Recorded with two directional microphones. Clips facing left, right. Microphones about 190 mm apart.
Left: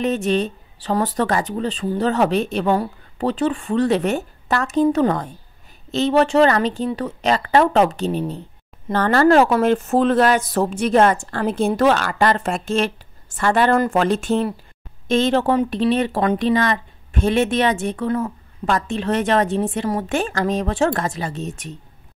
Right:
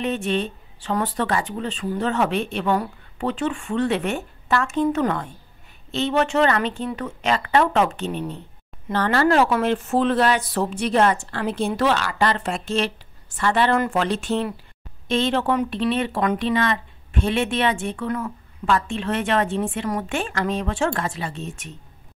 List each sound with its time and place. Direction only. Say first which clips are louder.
0.0 s speech: left 4 dB; 40° left (ahead or behind)